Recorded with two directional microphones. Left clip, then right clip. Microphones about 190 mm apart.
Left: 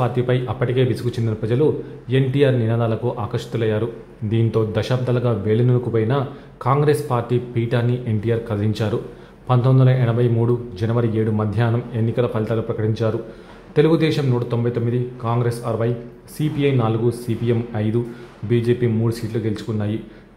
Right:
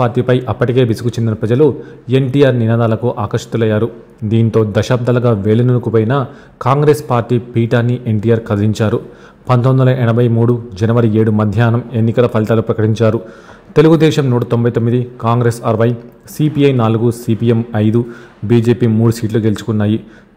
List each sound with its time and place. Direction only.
0.0 s speech: 30° right (ahead or behind)